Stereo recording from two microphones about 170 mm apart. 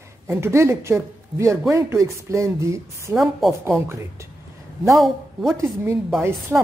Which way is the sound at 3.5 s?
15° right (ahead or behind).